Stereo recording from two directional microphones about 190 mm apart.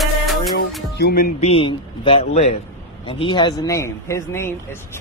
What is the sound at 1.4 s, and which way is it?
Speech, 30° left (ahead or behind).